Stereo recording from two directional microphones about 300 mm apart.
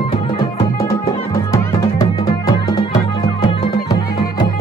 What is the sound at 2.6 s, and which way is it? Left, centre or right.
Music, centre.